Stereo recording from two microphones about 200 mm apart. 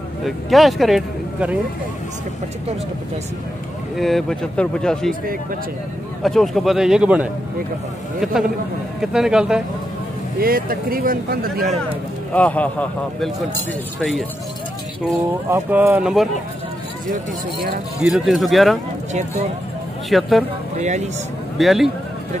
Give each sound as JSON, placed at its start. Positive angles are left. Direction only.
{"t": 0.2, "sound": "speech", "side_deg": 0}
{"t": 3.9, "sound": "speech", "side_deg": 0}
{"t": 6.2, "sound": "speech", "side_deg": 0}
{"t": 10.4, "sound": "speech", "side_deg": -45}
{"t": 12.4, "sound": "speech", "side_deg": 5}
{"t": 15.5, "sound": "speech", "side_deg": -10}
{"t": 17.1, "sound": "speech", "side_deg": -45}
{"t": 18.0, "sound": "speech", "side_deg": 0}
{"t": 19.1, "sound": "speech", "side_deg": -35}
{"t": 20.1, "sound": "speech", "side_deg": 0}
{"t": 20.8, "sound": "speech", "side_deg": -35}
{"t": 21.5, "sound": "speech", "side_deg": 0}